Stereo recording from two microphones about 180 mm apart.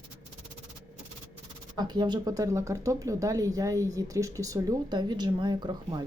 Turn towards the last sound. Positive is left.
turn(degrees=-25)  # may be behind; listen again after turning